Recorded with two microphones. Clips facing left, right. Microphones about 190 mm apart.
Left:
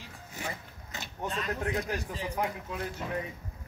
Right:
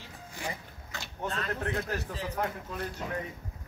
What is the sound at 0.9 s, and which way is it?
Speech, 15° left (ahead or behind).